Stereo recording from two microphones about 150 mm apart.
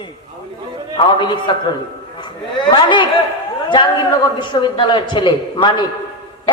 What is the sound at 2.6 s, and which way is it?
Speech, 30° left (ahead or behind).